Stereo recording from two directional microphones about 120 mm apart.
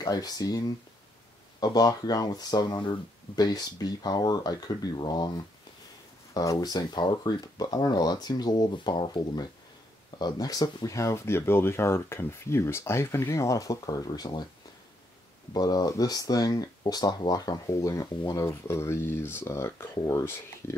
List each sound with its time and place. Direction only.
0.0 s speech: 30° left (ahead or behind)
15.5 s speech: 35° left (ahead or behind)